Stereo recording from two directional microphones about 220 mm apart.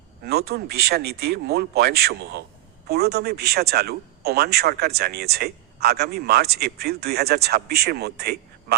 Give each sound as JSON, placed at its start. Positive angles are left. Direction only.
{"t": 0.3, "sound": "speech", "side_deg": -45}